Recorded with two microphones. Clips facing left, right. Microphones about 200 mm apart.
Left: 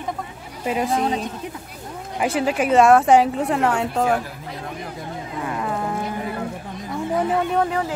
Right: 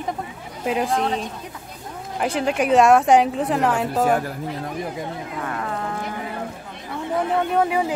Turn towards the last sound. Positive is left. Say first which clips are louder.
# right 1 dB
turn(degrees=-10)  # may be behind; listen again after turning